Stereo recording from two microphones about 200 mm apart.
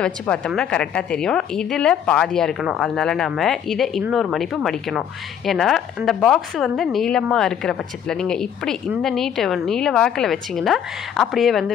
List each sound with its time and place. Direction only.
0.0 s speech: 5° left (ahead or behind)